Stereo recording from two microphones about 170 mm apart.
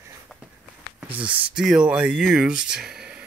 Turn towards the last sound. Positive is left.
turn(degrees=-5)  # may be behind; listen again after turning